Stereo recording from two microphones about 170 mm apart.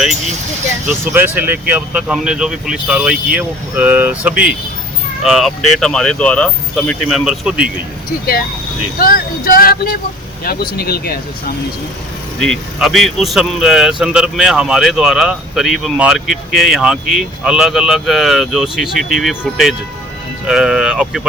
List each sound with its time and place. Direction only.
0.9 s speech: 10° right (ahead or behind)
9.0 s speech: 55° left (ahead or behind)
12.4 s speech: centre (ahead or behind)
20.5 s speech: 5° right (ahead or behind)